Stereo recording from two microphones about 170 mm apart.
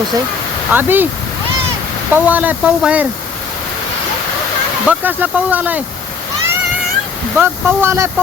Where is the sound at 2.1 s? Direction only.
10° right (ahead or behind).